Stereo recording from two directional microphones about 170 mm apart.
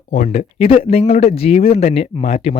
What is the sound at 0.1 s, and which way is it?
Speech, 45° left (ahead or behind).